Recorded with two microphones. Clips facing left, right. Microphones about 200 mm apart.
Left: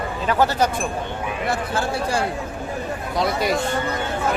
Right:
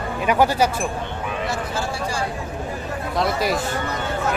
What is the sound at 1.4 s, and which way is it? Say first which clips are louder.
Speech: left 5 dB; 60° left (ahead or behind).